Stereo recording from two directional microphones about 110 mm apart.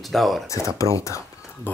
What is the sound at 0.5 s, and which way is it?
Speech, 30° left (ahead or behind).